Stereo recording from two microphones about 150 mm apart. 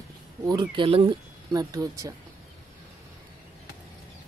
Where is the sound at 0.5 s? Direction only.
30° right (ahead or behind).